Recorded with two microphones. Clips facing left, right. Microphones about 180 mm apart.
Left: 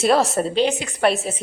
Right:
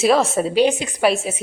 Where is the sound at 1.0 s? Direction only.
5° right (ahead or behind).